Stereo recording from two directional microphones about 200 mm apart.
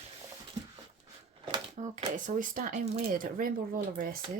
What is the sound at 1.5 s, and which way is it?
Typewriter, 20° right (ahead or behind).